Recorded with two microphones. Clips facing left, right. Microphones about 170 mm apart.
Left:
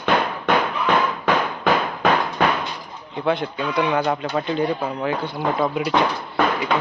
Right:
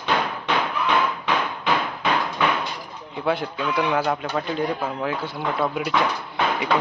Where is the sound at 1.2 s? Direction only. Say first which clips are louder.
Left 4 dB; 45° left (ahead or behind).